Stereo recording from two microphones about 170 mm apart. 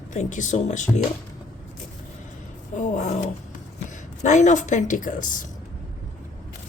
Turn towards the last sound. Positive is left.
turn(degrees=50)  # may be behind; listen again after turning